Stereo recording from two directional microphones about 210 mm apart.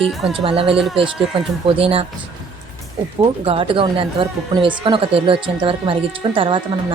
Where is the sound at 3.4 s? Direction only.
25° right (ahead or behind).